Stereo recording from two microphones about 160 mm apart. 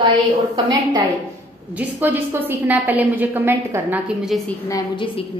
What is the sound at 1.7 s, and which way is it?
A woman's voice, 10° right (ahead or behind).